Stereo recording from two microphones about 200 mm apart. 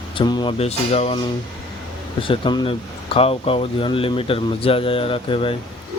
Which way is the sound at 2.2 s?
25° left (ahead or behind).